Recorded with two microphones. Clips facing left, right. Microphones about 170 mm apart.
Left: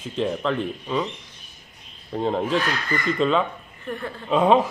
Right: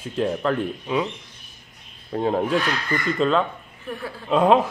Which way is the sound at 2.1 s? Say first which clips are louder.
Right 1 dB; 5° right (ahead or behind).